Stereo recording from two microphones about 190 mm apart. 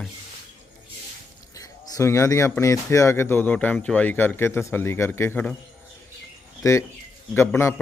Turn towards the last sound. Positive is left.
turn(degrees=15)  # may be behind; listen again after turning